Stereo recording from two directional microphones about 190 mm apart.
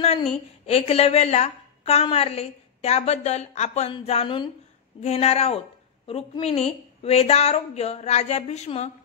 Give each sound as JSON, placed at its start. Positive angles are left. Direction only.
{"t": 0.0, "sound": "a woman's voice", "side_deg": 30}